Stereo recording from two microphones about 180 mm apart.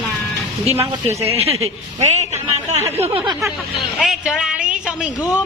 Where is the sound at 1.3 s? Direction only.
35° right (ahead or behind).